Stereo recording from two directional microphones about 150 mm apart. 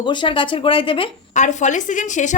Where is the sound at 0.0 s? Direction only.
30° left (ahead or behind).